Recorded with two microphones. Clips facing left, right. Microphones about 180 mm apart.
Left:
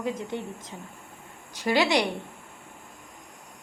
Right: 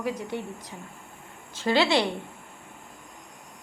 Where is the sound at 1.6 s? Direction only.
15° left (ahead or behind).